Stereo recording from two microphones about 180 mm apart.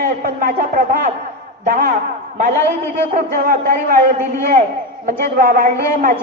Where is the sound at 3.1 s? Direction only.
55° right (ahead or behind).